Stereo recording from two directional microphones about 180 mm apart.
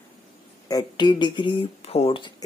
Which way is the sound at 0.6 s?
20° left (ahead or behind).